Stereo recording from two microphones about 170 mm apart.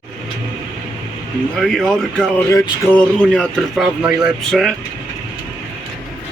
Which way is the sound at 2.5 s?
20° left (ahead or behind).